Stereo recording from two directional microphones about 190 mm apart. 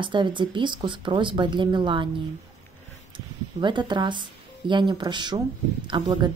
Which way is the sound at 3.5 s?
25° right (ahead or behind).